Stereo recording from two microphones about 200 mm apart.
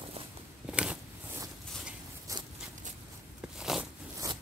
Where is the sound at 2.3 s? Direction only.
15° right (ahead or behind).